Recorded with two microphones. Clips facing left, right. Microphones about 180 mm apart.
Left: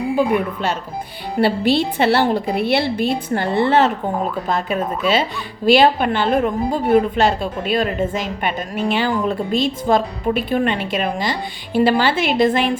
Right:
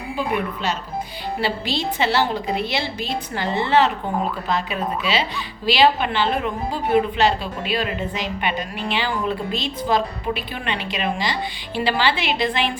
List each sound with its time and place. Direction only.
0.2 s speech: centre (ahead or behind)
1.4 s a woman's voice: 55° left (ahead or behind)